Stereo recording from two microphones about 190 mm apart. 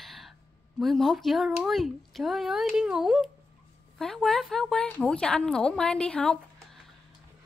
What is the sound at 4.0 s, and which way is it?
Speech, centre (ahead or behind).